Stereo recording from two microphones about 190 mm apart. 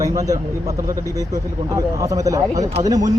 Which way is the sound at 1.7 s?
20° right (ahead or behind).